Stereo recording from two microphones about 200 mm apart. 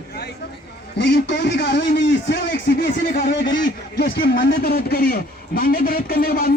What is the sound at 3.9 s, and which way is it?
A man's voice, 60° left (ahead or behind).